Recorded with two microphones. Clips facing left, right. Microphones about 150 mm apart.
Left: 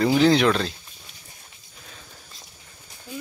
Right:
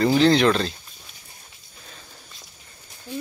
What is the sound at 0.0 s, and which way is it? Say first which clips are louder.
Speech: right 1 dB; 10° left (ahead or behind).